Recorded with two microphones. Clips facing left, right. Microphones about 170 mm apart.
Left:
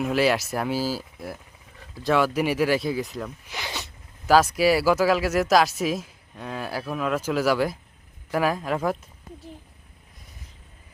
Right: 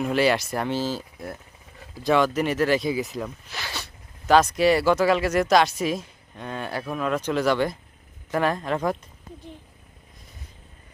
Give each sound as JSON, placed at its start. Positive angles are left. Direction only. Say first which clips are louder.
{"t": 0.0, "sound": "speech", "louder": "even", "side_deg": 0}
{"t": 3.4, "sound": "speech", "louder": "left 1 dB", "side_deg": 15}
{"t": 4.3, "sound": "speech", "louder": "even", "side_deg": 5}